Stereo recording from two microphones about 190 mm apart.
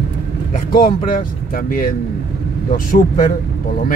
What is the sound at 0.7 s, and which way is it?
Speech, 50° left (ahead or behind).